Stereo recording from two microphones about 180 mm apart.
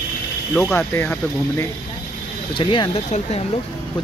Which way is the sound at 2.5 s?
25° left (ahead or behind).